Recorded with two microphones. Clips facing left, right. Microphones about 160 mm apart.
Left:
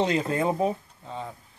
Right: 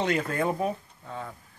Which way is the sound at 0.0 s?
25° left (ahead or behind).